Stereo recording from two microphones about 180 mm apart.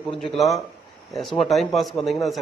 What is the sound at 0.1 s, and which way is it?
A man's voice, centre (ahead or behind).